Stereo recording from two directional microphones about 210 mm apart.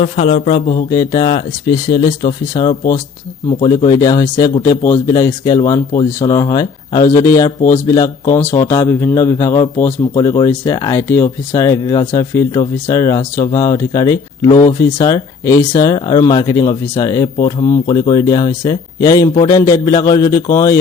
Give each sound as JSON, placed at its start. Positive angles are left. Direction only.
{"t": 0.0, "sound": "a man's voice", "side_deg": 30}